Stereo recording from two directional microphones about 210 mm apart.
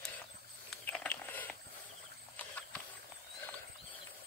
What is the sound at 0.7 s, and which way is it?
Biting, 5° left (ahead or behind).